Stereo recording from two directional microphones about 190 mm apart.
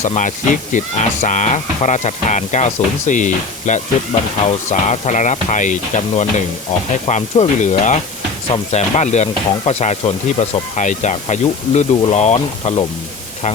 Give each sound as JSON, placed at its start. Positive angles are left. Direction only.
{"t": 0.0, "sound": "speech", "side_deg": 40}
{"t": 8.4, "sound": "speech", "side_deg": 25}
{"t": 9.0, "sound": "speech", "side_deg": 35}